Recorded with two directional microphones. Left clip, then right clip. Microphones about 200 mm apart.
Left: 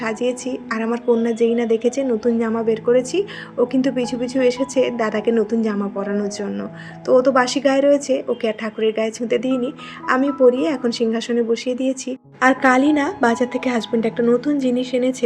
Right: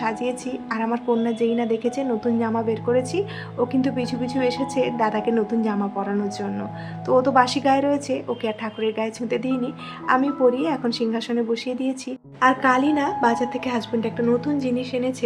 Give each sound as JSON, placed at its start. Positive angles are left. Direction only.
{"t": 0.0, "sound": "a woman's voice", "side_deg": 10}
{"t": 12.4, "sound": "a woman's voice", "side_deg": 20}